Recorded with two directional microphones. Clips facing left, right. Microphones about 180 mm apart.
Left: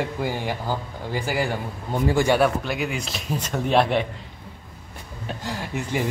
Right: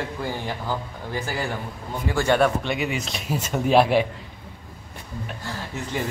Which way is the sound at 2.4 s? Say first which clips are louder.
Even; centre (ahead or behind).